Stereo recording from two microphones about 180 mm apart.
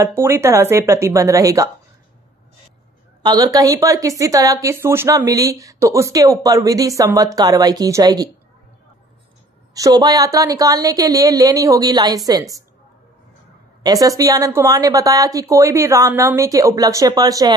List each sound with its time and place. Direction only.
0.0 s speech: 15° right (ahead or behind)
3.2 s a woman's voice: 20° right (ahead or behind)
9.8 s a woman's voice: 20° right (ahead or behind)
13.8 s a woman's voice: 20° right (ahead or behind)